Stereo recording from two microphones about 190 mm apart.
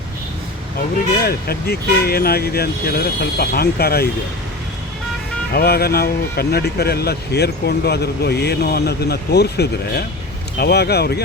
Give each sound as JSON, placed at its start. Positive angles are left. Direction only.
{"t": 1.2, "sound": "speech", "side_deg": 55}
{"t": 5.5, "sound": "speech", "side_deg": 55}